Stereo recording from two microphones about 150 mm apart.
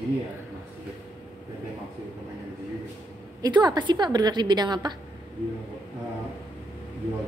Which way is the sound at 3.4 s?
30° right (ahead or behind).